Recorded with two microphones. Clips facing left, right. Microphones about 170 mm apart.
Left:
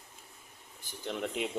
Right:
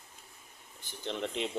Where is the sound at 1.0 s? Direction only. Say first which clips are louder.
Even; 5° left (ahead or behind).